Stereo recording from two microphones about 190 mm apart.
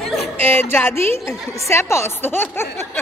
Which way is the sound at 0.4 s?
10° left (ahead or behind).